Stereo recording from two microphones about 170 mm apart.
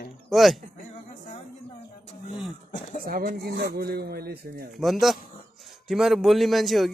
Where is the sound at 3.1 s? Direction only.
55° right (ahead or behind).